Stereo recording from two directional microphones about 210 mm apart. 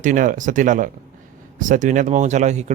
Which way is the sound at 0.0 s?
40° right (ahead or behind).